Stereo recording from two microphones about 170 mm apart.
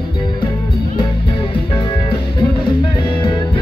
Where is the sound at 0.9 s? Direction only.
30° left (ahead or behind).